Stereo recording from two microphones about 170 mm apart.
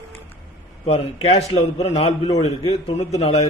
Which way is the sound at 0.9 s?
35° left (ahead or behind).